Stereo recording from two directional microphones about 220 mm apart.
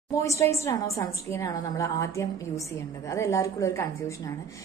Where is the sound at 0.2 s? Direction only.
15° left (ahead or behind).